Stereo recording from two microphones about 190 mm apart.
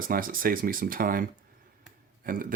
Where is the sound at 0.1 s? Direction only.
50° right (ahead or behind).